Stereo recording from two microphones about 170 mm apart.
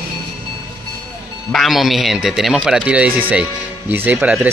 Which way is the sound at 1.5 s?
Centre (ahead or behind).